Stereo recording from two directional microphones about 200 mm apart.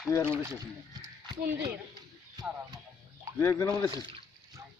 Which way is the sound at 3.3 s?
15° left (ahead or behind).